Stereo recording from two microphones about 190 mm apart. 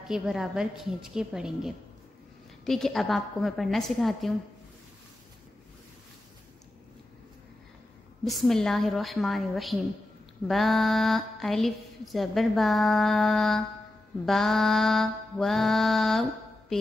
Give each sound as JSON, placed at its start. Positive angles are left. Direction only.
{"t": 0.0, "sound": "a woman's voice", "side_deg": -5}
{"t": 8.2, "sound": "a woman's voice", "side_deg": 0}